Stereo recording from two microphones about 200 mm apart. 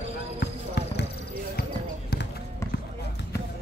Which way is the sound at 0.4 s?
55° left (ahead or behind).